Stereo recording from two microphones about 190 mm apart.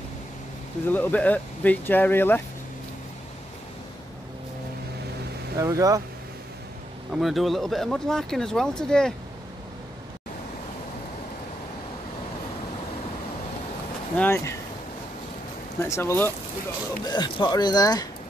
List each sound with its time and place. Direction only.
0.9 s speech: 10° left (ahead or behind)
5.6 s speech: 20° right (ahead or behind)
7.2 s speech: centre (ahead or behind)
14.1 s speech: 10° left (ahead or behind)
15.8 s speech: 10° left (ahead or behind)
17.0 s speech: 25° left (ahead or behind)